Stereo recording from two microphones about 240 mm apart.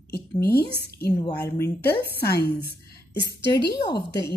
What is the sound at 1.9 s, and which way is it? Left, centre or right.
Speech, left.